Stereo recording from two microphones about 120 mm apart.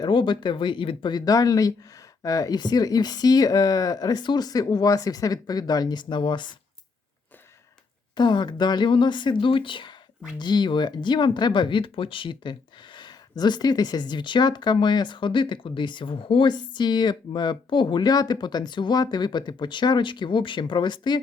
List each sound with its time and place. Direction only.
0.0 s speech: 40° left (ahead or behind)
8.1 s speech: 40° left (ahead or behind)